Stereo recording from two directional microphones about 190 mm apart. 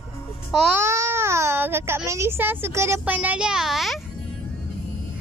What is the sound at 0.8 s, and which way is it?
Speech, 15° right (ahead or behind).